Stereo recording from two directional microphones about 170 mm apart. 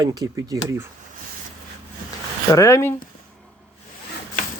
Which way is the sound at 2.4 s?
20° left (ahead or behind).